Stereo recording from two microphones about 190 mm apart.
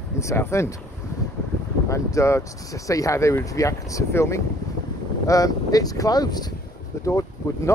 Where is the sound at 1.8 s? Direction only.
15° left (ahead or behind).